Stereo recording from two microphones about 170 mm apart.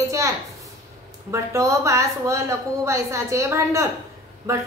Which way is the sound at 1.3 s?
15° right (ahead or behind).